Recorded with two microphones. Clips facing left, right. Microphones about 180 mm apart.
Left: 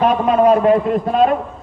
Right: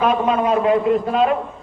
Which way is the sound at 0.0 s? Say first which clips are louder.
Left 4 dB; 40° left (ahead or behind).